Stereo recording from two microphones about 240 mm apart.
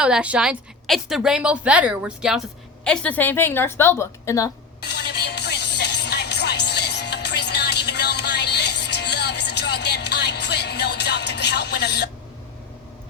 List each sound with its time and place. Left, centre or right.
0.0 s a woman's voice: centre
4.8 s music: left